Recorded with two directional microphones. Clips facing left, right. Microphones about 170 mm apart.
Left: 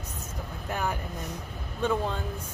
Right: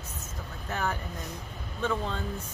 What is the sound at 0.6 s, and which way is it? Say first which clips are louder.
Speech: left 1 dB; 15° left (ahead or behind).